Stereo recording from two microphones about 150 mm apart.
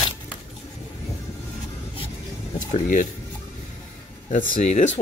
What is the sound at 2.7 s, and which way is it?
Speech, 55° left (ahead or behind).